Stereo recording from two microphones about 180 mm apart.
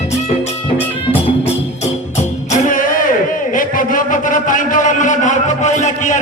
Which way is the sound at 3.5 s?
50° left (ahead or behind).